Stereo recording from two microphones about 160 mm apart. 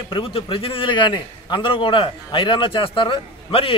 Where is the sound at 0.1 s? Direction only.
30° left (ahead or behind).